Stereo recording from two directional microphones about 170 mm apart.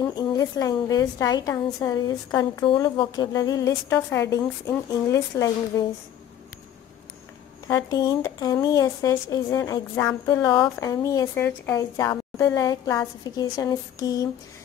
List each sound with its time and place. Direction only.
0.0 s a woman's voice: 25° left (ahead or behind)
7.6 s a woman's voice: 20° left (ahead or behind)